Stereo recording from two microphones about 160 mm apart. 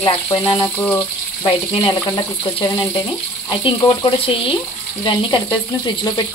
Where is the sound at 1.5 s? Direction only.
30° left (ahead or behind).